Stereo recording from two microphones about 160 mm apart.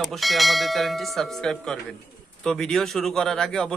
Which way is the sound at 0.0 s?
Centre (ahead or behind).